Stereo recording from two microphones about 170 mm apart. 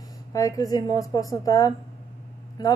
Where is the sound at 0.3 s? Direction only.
20° left (ahead or behind).